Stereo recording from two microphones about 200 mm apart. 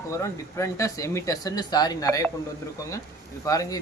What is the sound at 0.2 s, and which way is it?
Speech, 15° left (ahead or behind).